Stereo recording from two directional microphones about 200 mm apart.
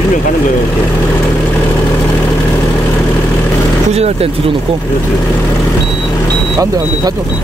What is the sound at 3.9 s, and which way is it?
Speech, 30° right (ahead or behind).